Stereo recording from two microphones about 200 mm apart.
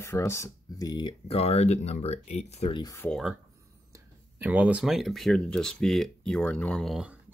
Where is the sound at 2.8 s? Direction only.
15° left (ahead or behind).